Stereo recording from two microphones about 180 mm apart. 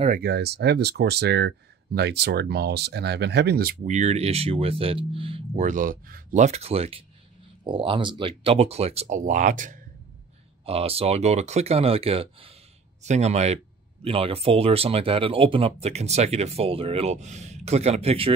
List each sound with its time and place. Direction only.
0.1 s speech: 60° right (ahead or behind)
3.8 s speech: 40° right (ahead or behind)
5.7 s speech: 50° right (ahead or behind)
10.6 s speech: 35° right (ahead or behind)